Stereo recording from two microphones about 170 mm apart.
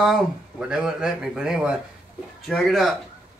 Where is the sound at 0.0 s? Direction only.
Centre (ahead or behind).